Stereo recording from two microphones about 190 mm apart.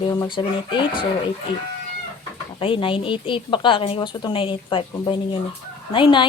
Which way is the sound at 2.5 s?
30° left (ahead or behind).